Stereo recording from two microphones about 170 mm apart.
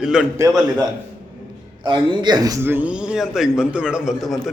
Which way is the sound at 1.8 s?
25° right (ahead or behind).